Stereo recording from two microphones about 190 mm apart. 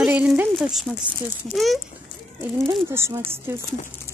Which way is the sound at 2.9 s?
15° right (ahead or behind).